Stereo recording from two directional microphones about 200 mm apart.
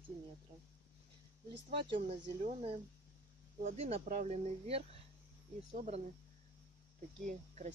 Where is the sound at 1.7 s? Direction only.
30° right (ahead or behind).